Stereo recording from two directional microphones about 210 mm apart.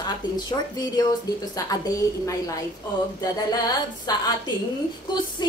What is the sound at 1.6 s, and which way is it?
Speech, 15° left (ahead or behind).